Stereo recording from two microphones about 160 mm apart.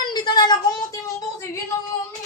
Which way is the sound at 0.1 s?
25° left (ahead or behind).